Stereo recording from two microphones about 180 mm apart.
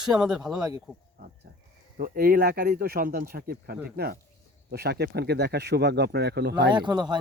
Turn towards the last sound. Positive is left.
turn(degrees=-25)  # may be behind; listen again after turning